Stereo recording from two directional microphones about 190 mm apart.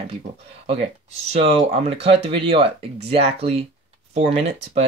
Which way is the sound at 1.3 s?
35° right (ahead or behind).